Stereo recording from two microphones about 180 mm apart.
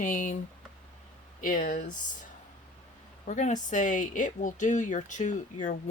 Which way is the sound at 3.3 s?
40° left (ahead or behind).